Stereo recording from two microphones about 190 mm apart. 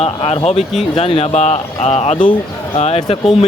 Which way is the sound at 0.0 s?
35° left (ahead or behind).